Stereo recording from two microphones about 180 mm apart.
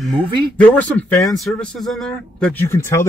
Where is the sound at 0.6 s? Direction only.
10° left (ahead or behind).